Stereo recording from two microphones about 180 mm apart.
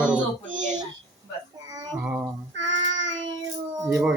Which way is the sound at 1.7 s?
20° right (ahead or behind).